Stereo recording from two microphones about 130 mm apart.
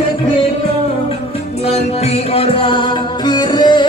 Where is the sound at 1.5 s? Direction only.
50° left (ahead or behind).